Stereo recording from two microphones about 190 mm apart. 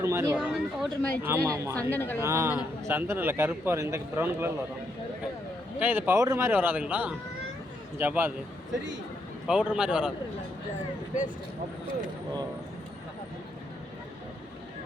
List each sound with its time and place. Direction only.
0.0 s speech: 15° right (ahead or behind)
0.3 s speech: 5° right (ahead or behind)
1.9 s speech: 10° left (ahead or behind)
2.1 s speech: 15° right (ahead or behind)
5.8 s speech: 10° right (ahead or behind)
9.5 s speech: 5° right (ahead or behind)